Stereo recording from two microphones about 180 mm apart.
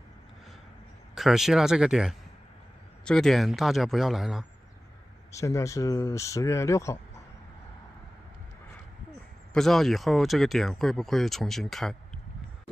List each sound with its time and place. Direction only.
1.1 s speech: centre (ahead or behind)
5.3 s speech: 15° left (ahead or behind)
9.5 s speech: centre (ahead or behind)